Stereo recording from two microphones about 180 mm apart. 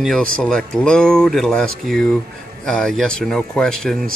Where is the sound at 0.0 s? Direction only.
5° left (ahead or behind).